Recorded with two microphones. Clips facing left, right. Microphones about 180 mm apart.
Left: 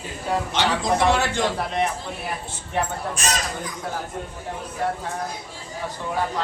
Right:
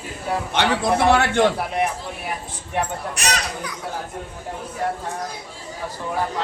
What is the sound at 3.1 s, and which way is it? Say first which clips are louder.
Speech: right 1 dB; 70° right (ahead or behind).